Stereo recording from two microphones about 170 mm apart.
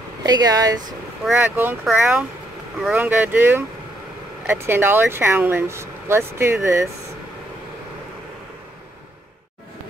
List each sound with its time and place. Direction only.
0.2 s speech: 25° right (ahead or behind)
1.4 s speech: 10° right (ahead or behind)